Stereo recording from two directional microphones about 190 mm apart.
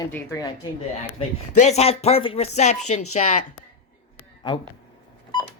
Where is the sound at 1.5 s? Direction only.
35° left (ahead or behind).